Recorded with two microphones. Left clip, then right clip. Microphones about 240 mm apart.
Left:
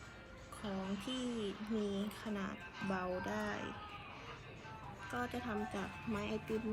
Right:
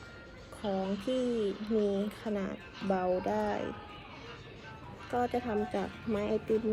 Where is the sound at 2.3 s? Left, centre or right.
Centre.